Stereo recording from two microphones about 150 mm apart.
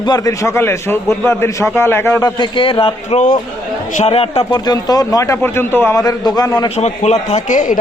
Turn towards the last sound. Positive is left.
turn(degrees=55)  # may be behind; listen again after turning